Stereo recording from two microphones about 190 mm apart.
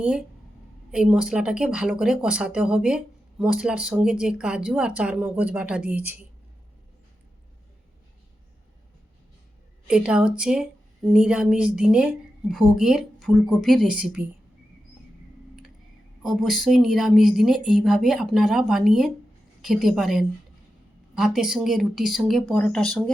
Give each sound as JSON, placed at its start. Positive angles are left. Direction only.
{"t": 0.0, "sound": "speech", "side_deg": -5}
{"t": 9.8, "sound": "speech", "side_deg": -5}
{"t": 16.2, "sound": "speech", "side_deg": 0}